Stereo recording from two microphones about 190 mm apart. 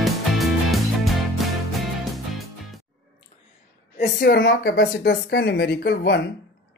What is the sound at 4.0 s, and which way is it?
Speech, 60° left (ahead or behind).